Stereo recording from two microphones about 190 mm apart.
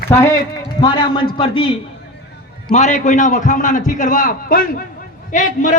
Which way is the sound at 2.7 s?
40° left (ahead or behind).